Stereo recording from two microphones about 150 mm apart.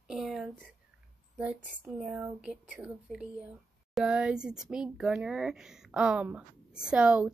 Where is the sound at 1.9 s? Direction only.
5° right (ahead or behind).